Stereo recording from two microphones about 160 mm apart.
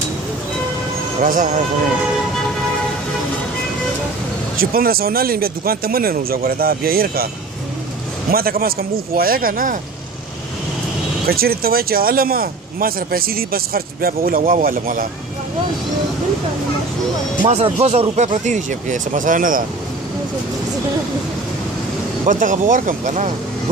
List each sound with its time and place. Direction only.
1.2 s speech: 60° right (ahead or behind)
4.7 s speech: 70° right (ahead or behind)
8.3 s speech: 70° right (ahead or behind)
11.2 s speech: 70° right (ahead or behind)
17.5 s speech: 40° right (ahead or behind); by 19.6 s 55° right (ahead or behind)
22.2 s speech: 50° right (ahead or behind)